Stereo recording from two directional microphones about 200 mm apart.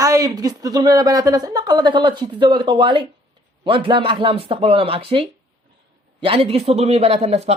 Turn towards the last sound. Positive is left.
turn(degrees=-30)  # may be behind; listen again after turning